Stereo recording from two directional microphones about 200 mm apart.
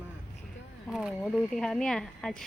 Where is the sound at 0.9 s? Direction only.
Centre (ahead or behind).